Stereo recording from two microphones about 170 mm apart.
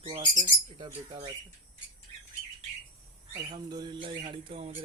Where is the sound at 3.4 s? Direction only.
25° right (ahead or behind).